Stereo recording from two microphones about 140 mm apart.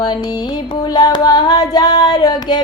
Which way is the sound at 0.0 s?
30° left (ahead or behind).